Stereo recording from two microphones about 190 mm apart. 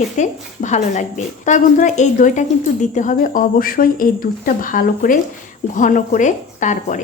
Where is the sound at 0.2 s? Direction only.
40° left (ahead or behind).